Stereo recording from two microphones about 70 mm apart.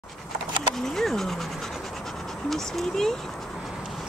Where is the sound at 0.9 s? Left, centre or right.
Centre.